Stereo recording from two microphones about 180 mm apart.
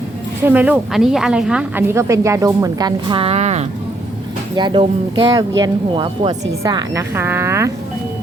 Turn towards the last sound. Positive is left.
turn(degrees=-15)  # may be behind; listen again after turning